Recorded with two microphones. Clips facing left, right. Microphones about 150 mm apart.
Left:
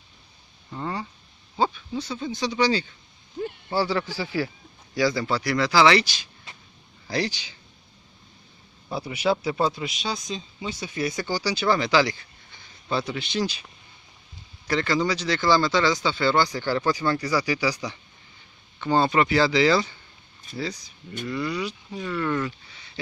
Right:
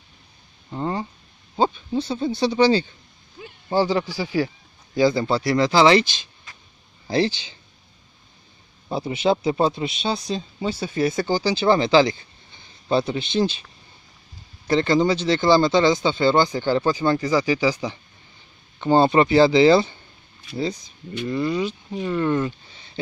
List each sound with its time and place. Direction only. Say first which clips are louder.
0.7 s a sound: right 5 dB; 25° right (ahead or behind)
1.6 s speech: right 4 dB; 25° right (ahead or behind)
3.7 s speech: right 5 dB; 20° right (ahead or behind)
4.9 s speech: right 5 dB; 25° right (ahead or behind)
8.8 s speech: right 4 dB; 25° right (ahead or behind)
14.7 s speech: right 5 dB; 25° right (ahead or behind)
21.3 s speech: right 5 dB; 25° right (ahead or behind)